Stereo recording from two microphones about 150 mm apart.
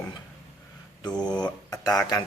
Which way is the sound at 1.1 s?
5° left (ahead or behind).